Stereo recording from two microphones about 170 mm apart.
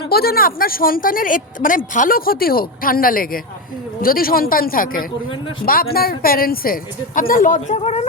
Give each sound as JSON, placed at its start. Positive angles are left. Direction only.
{"t": 0.1, "sound": "speech", "side_deg": 65}